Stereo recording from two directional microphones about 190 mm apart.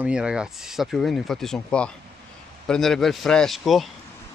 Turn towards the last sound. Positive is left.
turn(degrees=0)  # may be behind; listen again after turning